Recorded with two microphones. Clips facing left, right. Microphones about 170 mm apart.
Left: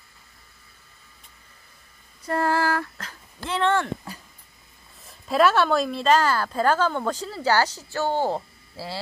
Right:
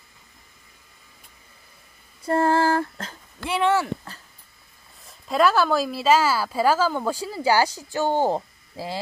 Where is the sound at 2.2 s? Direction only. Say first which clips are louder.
Right 3 dB; 25° right (ahead or behind).